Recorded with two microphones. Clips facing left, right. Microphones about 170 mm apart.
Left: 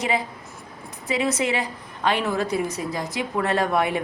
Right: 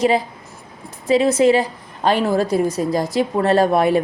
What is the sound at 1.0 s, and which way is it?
Speech, 30° right (ahead or behind).